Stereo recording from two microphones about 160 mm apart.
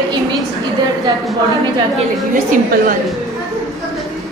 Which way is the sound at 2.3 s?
60° right (ahead or behind).